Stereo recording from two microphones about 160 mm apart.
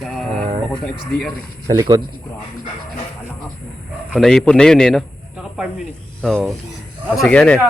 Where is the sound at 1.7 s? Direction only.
20° right (ahead or behind).